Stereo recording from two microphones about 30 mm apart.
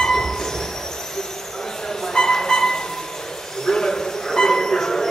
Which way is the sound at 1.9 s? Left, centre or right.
Centre.